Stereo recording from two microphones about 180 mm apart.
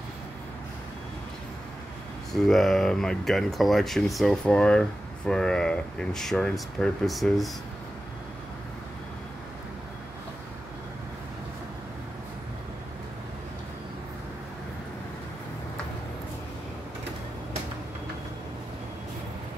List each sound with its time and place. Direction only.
2.3 s speech: centre (ahead or behind)